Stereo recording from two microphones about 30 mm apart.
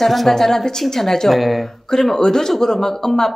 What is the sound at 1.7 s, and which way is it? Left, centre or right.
Speech, centre.